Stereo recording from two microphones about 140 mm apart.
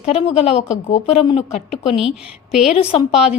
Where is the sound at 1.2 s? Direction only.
35° left (ahead or behind).